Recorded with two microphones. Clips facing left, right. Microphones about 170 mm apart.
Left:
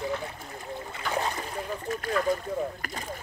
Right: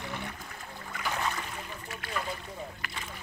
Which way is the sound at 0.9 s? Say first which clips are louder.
Left 2 dB; 35° left (ahead or behind).